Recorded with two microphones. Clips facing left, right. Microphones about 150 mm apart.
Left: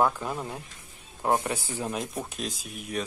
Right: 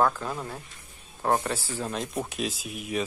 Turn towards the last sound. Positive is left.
turn(degrees=-5)  # may be behind; listen again after turning